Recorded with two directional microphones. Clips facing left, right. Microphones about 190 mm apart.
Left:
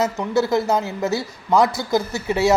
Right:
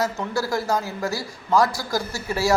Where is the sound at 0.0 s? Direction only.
20° left (ahead or behind).